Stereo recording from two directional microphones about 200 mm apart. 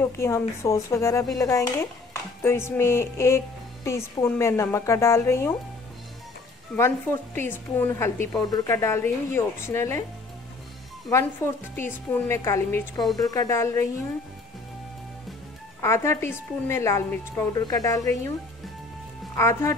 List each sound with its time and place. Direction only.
0.0 s a woman's voice: 15° left (ahead or behind)
6.8 s a woman's voice: 10° left (ahead or behind)
11.1 s a woman's voice: 15° left (ahead or behind)
15.8 s a woman's voice: 15° left (ahead or behind)
19.3 s a woman's voice: 15° left (ahead or behind)